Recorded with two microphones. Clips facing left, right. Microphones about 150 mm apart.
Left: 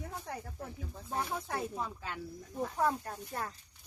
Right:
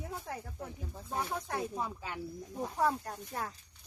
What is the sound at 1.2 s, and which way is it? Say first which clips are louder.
Speech: right 1 dB; centre (ahead or behind).